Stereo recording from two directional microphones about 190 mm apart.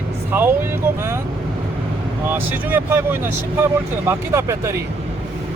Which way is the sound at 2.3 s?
10° right (ahead or behind).